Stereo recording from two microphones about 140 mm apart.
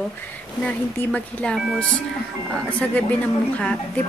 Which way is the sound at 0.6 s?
10° left (ahead or behind).